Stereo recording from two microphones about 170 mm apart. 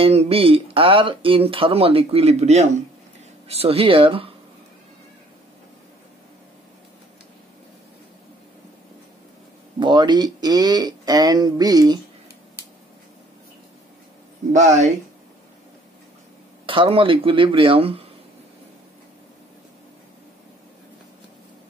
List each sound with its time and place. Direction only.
0.0 s speech: 35° right (ahead or behind)
9.8 s speech: 25° right (ahead or behind)
16.6 s speech: 30° right (ahead or behind)